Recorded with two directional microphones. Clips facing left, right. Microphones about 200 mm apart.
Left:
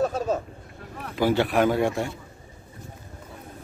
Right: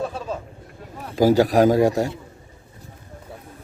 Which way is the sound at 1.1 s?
40° right (ahead or behind).